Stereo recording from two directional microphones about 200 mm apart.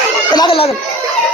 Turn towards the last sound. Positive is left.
turn(degrees=25)  # may be behind; listen again after turning